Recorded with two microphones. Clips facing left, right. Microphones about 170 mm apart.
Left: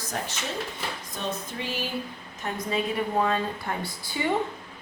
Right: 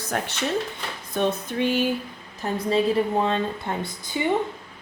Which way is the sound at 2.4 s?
30° right (ahead or behind).